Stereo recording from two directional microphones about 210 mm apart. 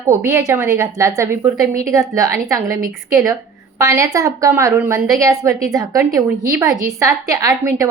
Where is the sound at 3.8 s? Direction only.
15° right (ahead or behind).